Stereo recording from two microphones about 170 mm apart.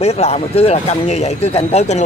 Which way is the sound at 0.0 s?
40° left (ahead or behind).